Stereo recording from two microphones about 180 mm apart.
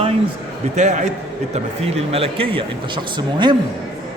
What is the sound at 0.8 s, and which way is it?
A man's voice, 40° right (ahead or behind).